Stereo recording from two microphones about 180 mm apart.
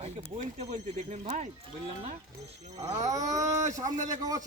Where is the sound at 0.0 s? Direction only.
40° right (ahead or behind).